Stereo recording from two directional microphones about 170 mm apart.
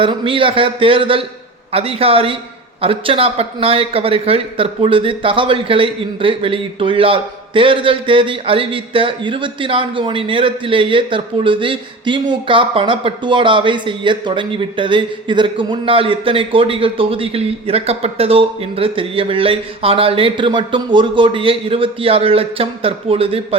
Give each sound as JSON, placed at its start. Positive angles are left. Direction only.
{"t": 0.0, "sound": "speech", "side_deg": -30}